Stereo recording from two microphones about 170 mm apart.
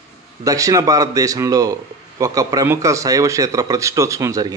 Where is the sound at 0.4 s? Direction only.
20° right (ahead or behind).